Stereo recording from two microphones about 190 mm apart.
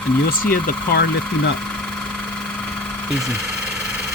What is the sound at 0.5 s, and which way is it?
Speech, 50° left (ahead or behind).